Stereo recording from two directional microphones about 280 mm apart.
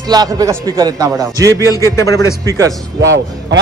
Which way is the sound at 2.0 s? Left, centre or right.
Centre.